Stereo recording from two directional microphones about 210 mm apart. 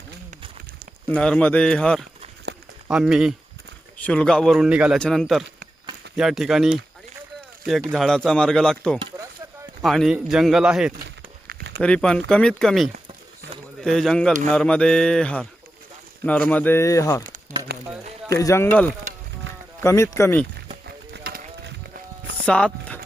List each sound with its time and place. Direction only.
1.0 s a man's voice: 5° left (ahead or behind)
11.4 s a sound: 50° right (ahead or behind)
11.8 s a man's voice: 5° left (ahead or behind)
18.3 s speech: 15° left (ahead or behind)
20.8 s run: 50° right (ahead or behind)
22.4 s speech: 5° left (ahead or behind)